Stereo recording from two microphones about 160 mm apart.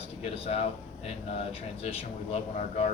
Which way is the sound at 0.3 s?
40° left (ahead or behind).